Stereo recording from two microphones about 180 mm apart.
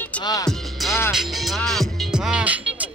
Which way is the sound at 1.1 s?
Centre (ahead or behind).